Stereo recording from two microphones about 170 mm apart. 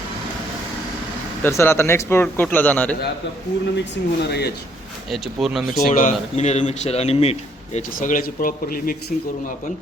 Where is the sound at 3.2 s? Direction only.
90° left.